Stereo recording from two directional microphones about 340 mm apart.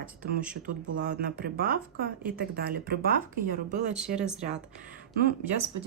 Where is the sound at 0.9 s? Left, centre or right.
Right.